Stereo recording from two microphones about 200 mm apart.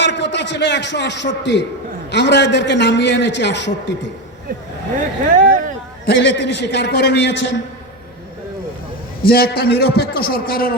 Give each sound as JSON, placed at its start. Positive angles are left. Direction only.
{"t": 0.0, "sound": "a man's voice", "side_deg": 60}
{"t": 5.4, "sound": "speech", "side_deg": -40}
{"t": 6.1, "sound": "a man's voice", "side_deg": 60}
{"t": 9.2, "sound": "a man's voice", "side_deg": 50}